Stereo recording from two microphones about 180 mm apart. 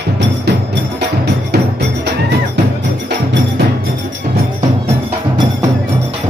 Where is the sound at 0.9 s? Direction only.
70° right (ahead or behind).